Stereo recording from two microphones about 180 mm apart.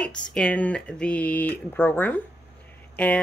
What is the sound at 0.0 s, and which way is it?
Speech, 5° left (ahead or behind).